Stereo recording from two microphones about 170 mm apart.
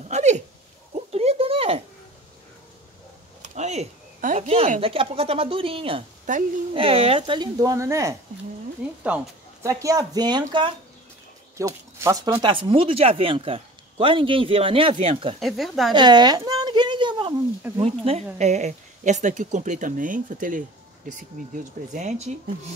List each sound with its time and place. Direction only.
0.1 s dog: 45° right (ahead or behind)
0.9 s a sound: 35° right (ahead or behind)
3.4 s speech: 45° right (ahead or behind)
6.3 s speech: 50° right (ahead or behind)
6.7 s speech: 35° right (ahead or behind)
15.4 s speech: centre (ahead or behind)
15.9 s a sound: 25° right (ahead or behind)
17.8 s speech: 40° right (ahead or behind)